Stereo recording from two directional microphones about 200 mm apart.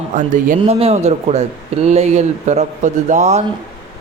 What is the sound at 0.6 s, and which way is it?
A man's voice, 30° right (ahead or behind).